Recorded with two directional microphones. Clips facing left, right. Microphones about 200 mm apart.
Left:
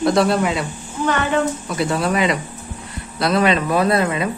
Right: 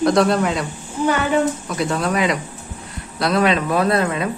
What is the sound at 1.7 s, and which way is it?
Speech, centre (ahead or behind).